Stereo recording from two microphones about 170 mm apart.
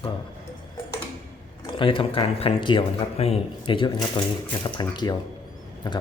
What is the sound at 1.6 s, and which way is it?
Speech, 30° left (ahead or behind).